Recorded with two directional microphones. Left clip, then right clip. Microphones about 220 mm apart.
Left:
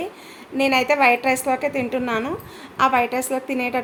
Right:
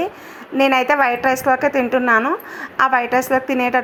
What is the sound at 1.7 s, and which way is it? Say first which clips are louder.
A woman's voice: right 8 dB; 15° right (ahead or behind).